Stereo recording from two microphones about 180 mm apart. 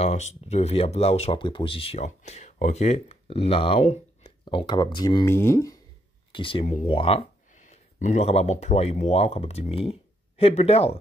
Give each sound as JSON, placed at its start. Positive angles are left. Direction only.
{"t": 0.0, "sound": "speech", "side_deg": 40}
{"t": 6.3, "sound": "speech", "side_deg": 30}